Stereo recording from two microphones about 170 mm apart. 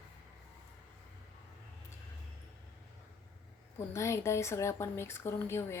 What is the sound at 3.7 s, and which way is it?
Speech, 15° left (ahead or behind).